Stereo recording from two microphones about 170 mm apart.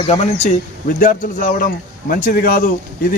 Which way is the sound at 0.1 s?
40° left (ahead or behind).